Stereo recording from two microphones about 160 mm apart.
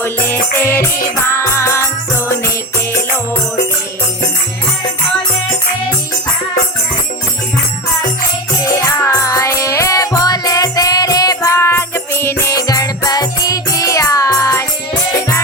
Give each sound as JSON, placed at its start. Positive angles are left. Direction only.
{"t": 0.0, "sound": "music", "side_deg": 10}
{"t": 8.6, "sound": "music", "side_deg": 20}